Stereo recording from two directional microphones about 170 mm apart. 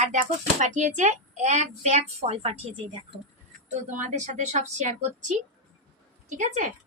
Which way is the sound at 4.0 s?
45° right (ahead or behind).